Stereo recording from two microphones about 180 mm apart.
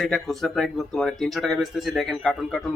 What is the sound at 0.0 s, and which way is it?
A man's voice, centre (ahead or behind).